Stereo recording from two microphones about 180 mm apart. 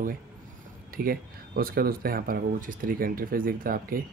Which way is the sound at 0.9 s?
55° right (ahead or behind).